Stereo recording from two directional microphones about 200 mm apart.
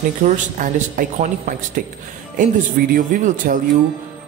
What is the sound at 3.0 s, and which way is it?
Speech, 40° right (ahead or behind).